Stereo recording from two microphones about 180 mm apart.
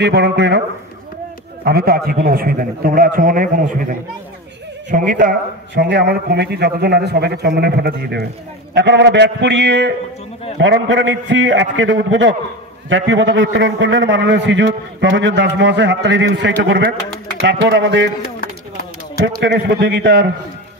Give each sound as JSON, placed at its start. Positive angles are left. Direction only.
{"t": 0.0, "sound": "speech", "side_deg": -70}
{"t": 1.6, "sound": "a man's voice", "side_deg": -60}
{"t": 4.9, "sound": "a man's voice", "side_deg": -45}
{"t": 5.8, "sound": "a man's voice", "side_deg": -65}
{"t": 8.7, "sound": "a man's voice", "side_deg": -80}
{"t": 10.6, "sound": "a man's voice", "side_deg": -90}
{"t": 19.2, "sound": "a man's voice", "side_deg": -85}